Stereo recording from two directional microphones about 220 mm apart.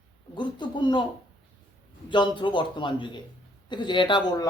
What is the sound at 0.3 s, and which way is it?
Speech, 20° left (ahead or behind).